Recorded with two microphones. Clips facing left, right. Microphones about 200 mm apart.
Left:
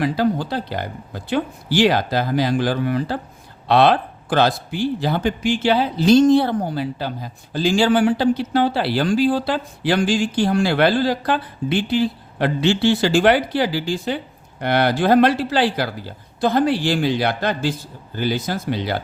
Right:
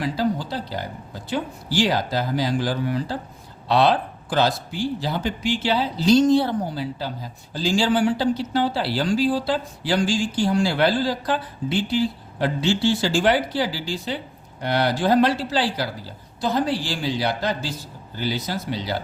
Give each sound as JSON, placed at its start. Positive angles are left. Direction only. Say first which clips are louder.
{"t": 0.0, "sound": "speech", "louder": "left 4 dB", "side_deg": 60}